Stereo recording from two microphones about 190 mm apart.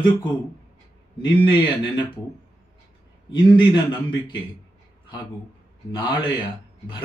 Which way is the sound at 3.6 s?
25° left (ahead or behind).